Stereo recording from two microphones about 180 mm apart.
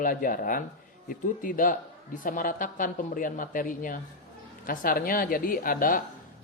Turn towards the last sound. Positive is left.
turn(degrees=50)  # may be behind; listen again after turning